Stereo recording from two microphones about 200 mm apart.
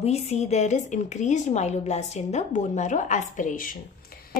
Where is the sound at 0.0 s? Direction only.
30° left (ahead or behind).